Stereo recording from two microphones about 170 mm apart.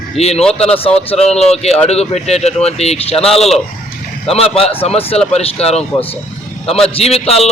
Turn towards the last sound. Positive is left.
turn(degrees=35)  # may be behind; listen again after turning